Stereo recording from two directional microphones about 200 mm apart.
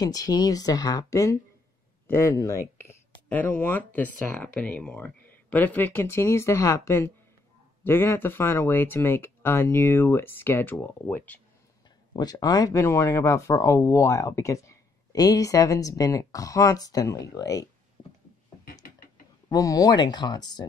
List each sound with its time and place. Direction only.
0.0 s speech: 20° left (ahead or behind)
12.2 s speech: 20° left (ahead or behind)
18.8 s a sound: 45° left (ahead or behind)
19.5 s speech: 15° left (ahead or behind)